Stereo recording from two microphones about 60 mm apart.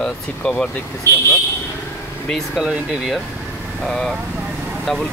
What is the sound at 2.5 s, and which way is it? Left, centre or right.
Speech, centre.